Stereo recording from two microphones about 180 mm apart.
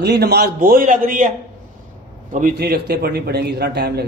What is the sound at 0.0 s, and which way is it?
A man's voice, 65° right (ahead or behind).